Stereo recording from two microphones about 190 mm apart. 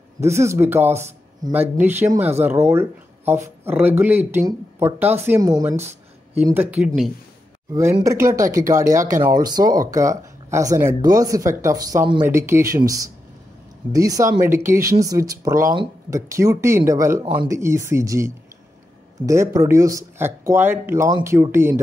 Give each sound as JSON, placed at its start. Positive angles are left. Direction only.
{"t": 0.2, "sound": "speech", "side_deg": -15}